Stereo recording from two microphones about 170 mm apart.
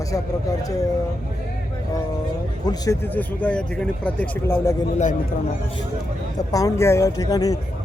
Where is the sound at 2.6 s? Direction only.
20° left (ahead or behind).